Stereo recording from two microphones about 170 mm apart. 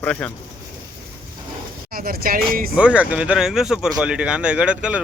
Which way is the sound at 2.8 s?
5° right (ahead or behind).